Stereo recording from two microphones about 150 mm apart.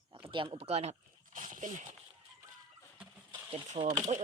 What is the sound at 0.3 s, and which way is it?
Speech, 35° right (ahead or behind).